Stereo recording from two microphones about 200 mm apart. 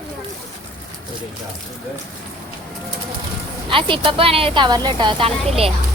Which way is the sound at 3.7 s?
25° right (ahead or behind).